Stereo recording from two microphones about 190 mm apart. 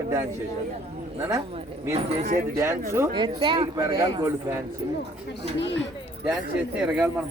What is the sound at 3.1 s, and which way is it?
Speech, 25° right (ahead or behind).